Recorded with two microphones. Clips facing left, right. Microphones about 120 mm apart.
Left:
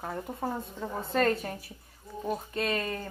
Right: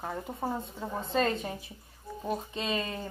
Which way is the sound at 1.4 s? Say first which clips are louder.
Even; 20° right (ahead or behind).